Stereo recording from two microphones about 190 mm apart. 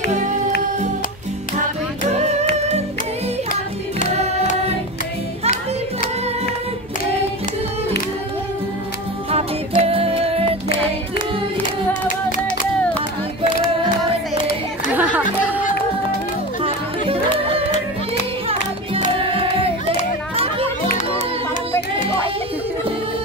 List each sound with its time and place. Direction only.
0.1 s music: 40° right (ahead or behind)
2.0 s music: 35° right (ahead or behind)
9.3 s music: 30° right (ahead or behind)
15.0 s music: 10° right (ahead or behind)
16.6 s music: 30° right (ahead or behind)
19.1 s music: 30° right (ahead or behind)